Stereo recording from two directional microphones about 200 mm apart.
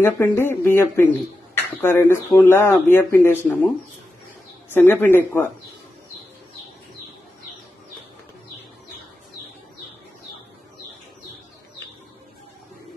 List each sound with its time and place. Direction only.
0.0 s speech: 10° left (ahead or behind)
4.7 s speech: 10° left (ahead or behind)